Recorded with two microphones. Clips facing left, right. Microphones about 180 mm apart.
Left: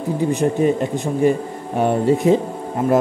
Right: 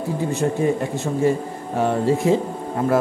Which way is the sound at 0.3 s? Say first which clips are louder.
Left 3 dB; 15° left (ahead or behind).